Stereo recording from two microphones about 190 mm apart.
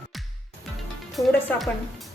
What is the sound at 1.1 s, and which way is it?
Speech, centre (ahead or behind).